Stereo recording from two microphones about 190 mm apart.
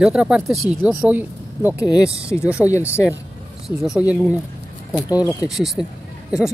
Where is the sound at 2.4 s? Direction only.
5° right (ahead or behind).